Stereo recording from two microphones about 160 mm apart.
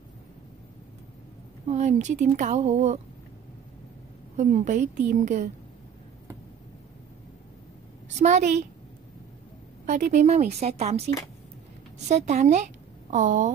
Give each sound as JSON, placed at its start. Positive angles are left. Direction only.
{"t": 1.7, "sound": "speech", "side_deg": -45}
{"t": 4.4, "sound": "speech", "side_deg": -50}
{"t": 8.2, "sound": "speech", "side_deg": -45}
{"t": 9.8, "sound": "speech", "side_deg": -50}